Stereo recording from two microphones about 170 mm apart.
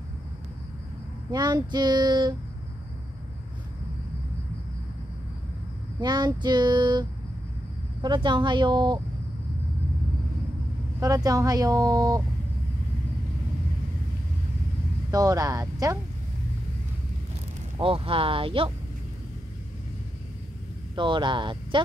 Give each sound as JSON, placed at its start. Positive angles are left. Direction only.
{"t": 1.3, "sound": "speech", "side_deg": -25}
{"t": 5.9, "sound": "speech", "side_deg": -25}
{"t": 11.0, "sound": "speech", "side_deg": -20}
{"t": 15.0, "sound": "speech", "side_deg": -20}
{"t": 17.7, "sound": "speech", "side_deg": -30}
{"t": 20.9, "sound": "speech", "side_deg": -30}